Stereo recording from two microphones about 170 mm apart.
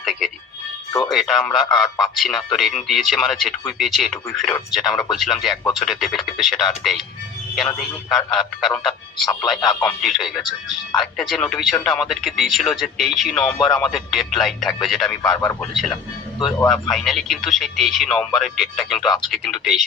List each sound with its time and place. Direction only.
0.0 s music: centre (ahead or behind)
1.1 s speech: centre (ahead or behind)
9.2 s speech: 25° left (ahead or behind)
9.8 s speech: centre (ahead or behind)
15.2 s speech: 20° left (ahead or behind)
15.7 s speech: centre (ahead or behind)